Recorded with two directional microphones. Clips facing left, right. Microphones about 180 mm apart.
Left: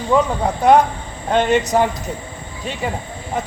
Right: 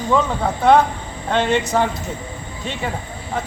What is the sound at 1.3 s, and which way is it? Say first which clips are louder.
Speech: left 2 dB; 15° left (ahead or behind).